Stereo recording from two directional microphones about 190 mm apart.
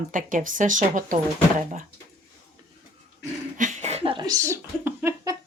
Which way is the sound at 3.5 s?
40° right (ahead or behind).